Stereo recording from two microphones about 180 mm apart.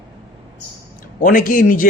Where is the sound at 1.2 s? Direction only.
50° left (ahead or behind).